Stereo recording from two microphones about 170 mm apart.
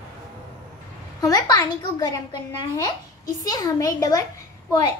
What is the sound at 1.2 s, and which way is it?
A child's voice, 25° left (ahead or behind).